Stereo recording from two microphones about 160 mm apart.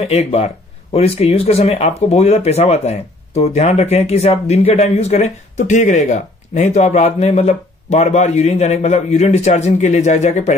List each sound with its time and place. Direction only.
0.0 s speech: 40° left (ahead or behind)